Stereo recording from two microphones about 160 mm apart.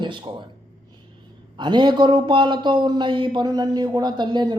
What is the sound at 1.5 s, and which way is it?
Speech, 30° right (ahead or behind).